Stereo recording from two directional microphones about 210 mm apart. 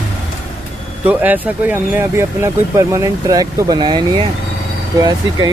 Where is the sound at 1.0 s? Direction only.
10° right (ahead or behind).